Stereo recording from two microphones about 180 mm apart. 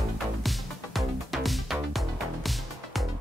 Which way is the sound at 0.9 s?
Centre (ahead or behind).